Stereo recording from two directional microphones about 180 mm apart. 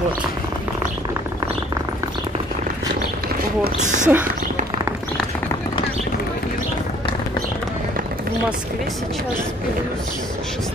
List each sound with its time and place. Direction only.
3.8 s speech: 45° right (ahead or behind)